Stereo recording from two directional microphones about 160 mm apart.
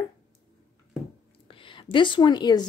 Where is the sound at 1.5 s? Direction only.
30° left (ahead or behind).